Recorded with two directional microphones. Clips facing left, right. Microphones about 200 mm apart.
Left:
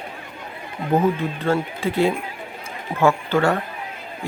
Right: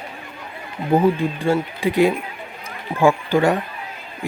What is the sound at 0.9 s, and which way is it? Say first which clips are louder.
Speech: right 3 dB; 10° right (ahead or behind).